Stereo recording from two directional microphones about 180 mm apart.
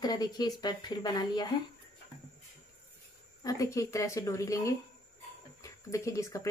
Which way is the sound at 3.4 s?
20° left (ahead or behind).